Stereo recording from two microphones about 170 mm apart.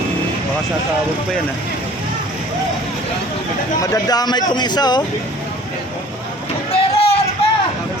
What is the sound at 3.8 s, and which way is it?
Speech, 20° left (ahead or behind).